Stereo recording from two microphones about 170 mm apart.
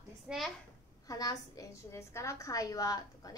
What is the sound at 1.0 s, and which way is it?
A woman's voice, 20° left (ahead or behind).